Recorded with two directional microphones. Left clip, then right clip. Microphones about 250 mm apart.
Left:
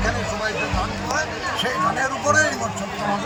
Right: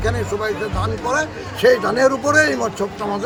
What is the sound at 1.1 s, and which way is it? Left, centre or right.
Speech, right.